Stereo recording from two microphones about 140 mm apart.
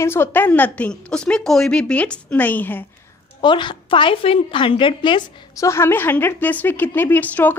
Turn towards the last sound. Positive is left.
turn(degrees=15)  # may be behind; listen again after turning